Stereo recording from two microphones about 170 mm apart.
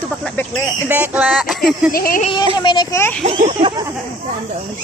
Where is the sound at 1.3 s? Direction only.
Centre (ahead or behind).